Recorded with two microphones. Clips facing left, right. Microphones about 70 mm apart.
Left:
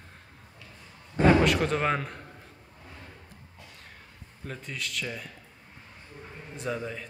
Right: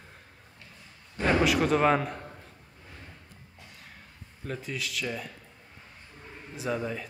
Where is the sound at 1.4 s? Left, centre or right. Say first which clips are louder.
Right 2 dB; centre.